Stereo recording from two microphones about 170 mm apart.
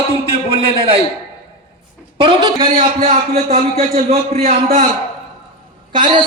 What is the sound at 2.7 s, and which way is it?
A man's voice, 40° right (ahead or behind).